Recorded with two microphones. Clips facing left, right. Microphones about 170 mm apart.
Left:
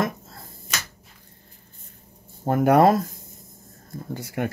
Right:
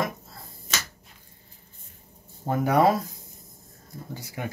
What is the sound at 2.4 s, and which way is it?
Speech, 60° left (ahead or behind).